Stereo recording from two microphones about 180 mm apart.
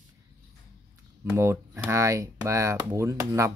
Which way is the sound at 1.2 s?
10° right (ahead or behind).